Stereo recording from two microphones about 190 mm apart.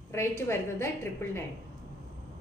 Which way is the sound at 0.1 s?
15° left (ahead or behind).